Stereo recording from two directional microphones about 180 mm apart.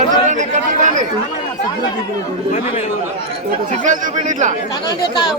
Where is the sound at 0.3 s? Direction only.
40° right (ahead or behind).